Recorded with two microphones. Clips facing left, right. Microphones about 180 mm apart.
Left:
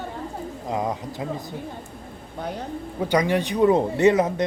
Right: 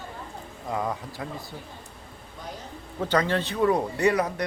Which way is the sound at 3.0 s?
15° left (ahead or behind).